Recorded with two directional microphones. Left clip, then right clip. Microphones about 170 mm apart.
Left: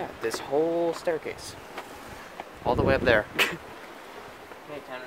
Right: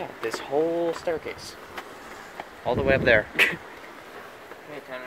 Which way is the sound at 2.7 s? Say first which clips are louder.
Right 2 dB; 10° left (ahead or behind).